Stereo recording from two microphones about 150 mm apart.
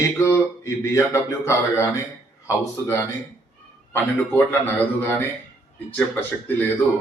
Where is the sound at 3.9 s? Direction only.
15° left (ahead or behind).